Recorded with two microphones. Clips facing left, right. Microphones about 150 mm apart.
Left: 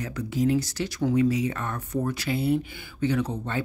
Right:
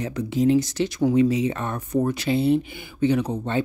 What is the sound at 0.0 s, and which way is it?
Speech, 20° right (ahead or behind).